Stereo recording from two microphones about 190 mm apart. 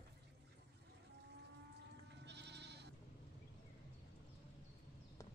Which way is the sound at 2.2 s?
65° right (ahead or behind).